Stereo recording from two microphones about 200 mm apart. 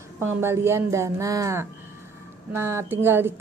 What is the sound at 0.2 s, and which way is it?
A woman's voice, 10° right (ahead or behind).